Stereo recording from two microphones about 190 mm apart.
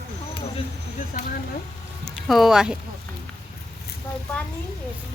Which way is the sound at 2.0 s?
Centre (ahead or behind).